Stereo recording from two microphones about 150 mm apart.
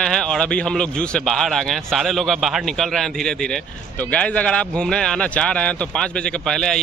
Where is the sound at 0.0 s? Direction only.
5° left (ahead or behind).